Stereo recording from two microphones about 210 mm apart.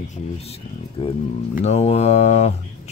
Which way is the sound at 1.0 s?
25° left (ahead or behind).